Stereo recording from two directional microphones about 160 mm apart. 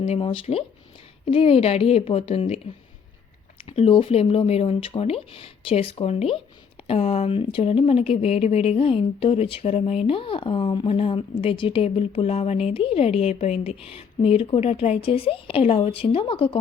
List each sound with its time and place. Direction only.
0.0 s speech: 35° left (ahead or behind)
3.6 s speech: 35° left (ahead or behind)